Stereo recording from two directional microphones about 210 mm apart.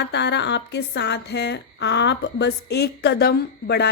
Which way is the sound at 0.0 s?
55° left (ahead or behind).